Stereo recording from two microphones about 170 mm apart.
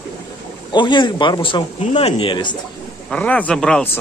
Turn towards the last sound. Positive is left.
turn(degrees=10)  # may be behind; listen again after turning